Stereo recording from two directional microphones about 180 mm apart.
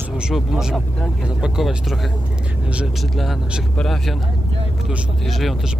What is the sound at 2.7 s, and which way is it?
Speech, 5° right (ahead or behind).